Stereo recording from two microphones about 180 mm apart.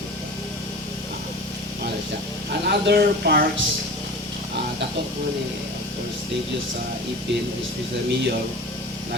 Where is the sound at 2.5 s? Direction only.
65° right (ahead or behind).